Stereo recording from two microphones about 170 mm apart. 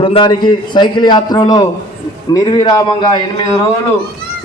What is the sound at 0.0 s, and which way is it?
A man's voice, 30° left (ahead or behind).